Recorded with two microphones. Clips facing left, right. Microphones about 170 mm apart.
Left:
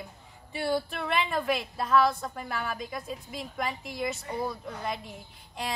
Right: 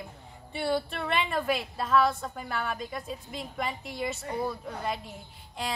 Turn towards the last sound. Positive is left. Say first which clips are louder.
# right 1 dB
turn(degrees=0)  # may be behind; listen again after turning